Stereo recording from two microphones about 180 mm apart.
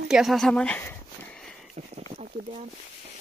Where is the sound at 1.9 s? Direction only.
40° right (ahead or behind).